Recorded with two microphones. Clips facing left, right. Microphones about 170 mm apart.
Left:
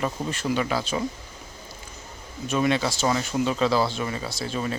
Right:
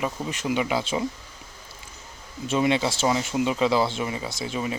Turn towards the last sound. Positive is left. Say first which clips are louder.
# even
turn(degrees=-15)  # may be behind; listen again after turning